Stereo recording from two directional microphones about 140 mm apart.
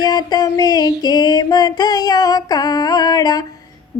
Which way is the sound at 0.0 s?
30° left (ahead or behind).